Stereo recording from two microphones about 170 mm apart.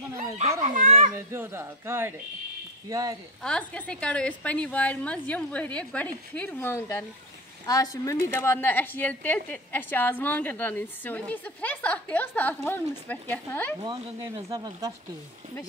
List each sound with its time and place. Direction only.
0.7 s a child's voice: 50° right (ahead or behind)
1.1 s speech: 15° right (ahead or behind)
3.4 s a woman's voice: 5° left (ahead or behind)
13.7 s speech: 20° right (ahead or behind)